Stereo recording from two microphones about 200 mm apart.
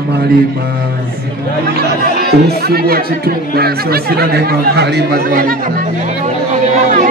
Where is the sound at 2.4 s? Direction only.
50° right (ahead or behind).